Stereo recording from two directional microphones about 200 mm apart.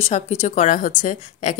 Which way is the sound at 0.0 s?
35° left (ahead or behind).